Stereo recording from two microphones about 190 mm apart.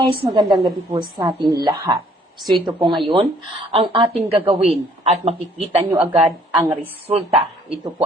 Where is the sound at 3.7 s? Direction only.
30° right (ahead or behind).